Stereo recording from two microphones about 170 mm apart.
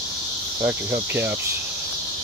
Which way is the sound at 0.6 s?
15° right (ahead or behind).